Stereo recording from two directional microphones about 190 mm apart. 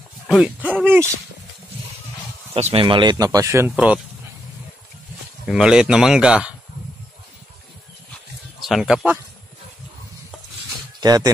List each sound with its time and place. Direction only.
0.3 s speech: 5° right (ahead or behind)
2.5 s speech: 30° right (ahead or behind); by 4.0 s 5° right (ahead or behind)
5.5 s speech: 5° right (ahead or behind)
8.5 s speech: centre (ahead or behind)
11.0 s speech: 20° right (ahead or behind)